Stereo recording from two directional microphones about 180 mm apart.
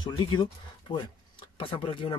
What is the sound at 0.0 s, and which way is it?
Speech, 25° left (ahead or behind).